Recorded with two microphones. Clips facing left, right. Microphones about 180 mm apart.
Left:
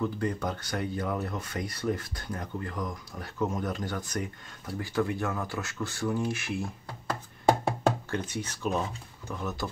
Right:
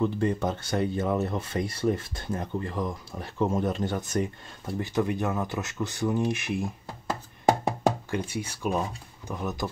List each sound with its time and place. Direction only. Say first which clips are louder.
0.0 s speech: right 4 dB; 25° right (ahead or behind)
7.6 s music: right 1 dB; 10° right (ahead or behind)
9.3 s speech: right 3 dB; 15° right (ahead or behind)